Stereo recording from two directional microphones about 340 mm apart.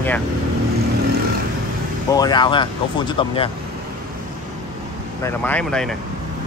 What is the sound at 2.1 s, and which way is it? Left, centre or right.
Speech, centre.